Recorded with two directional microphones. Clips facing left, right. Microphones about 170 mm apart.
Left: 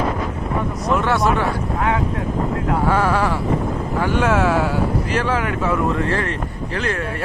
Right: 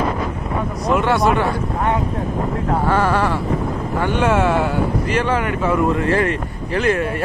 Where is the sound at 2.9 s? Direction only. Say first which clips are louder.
Right 1 dB; 5° left (ahead or behind).